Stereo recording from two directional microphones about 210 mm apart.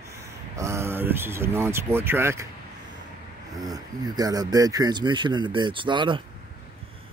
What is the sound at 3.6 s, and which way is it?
Speech, 20° right (ahead or behind).